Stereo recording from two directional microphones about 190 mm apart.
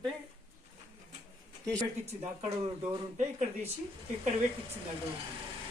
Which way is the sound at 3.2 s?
40° right (ahead or behind).